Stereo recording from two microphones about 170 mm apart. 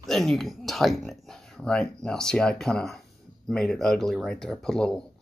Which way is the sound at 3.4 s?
Centre (ahead or behind).